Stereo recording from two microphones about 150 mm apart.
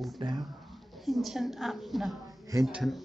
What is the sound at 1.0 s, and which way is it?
Speech, centre (ahead or behind).